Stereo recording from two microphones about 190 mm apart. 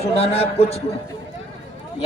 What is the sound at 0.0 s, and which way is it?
Speech, 30° left (ahead or behind).